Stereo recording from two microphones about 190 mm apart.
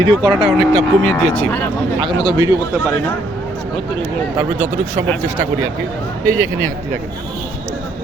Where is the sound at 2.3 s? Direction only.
15° right (ahead or behind).